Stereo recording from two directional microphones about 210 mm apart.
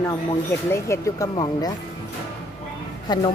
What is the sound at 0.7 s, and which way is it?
Speech, 15° left (ahead or behind).